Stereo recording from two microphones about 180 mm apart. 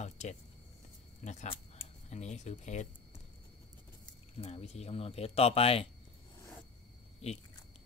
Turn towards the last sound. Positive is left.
turn(degrees=35)  # may be behind; listen again after turning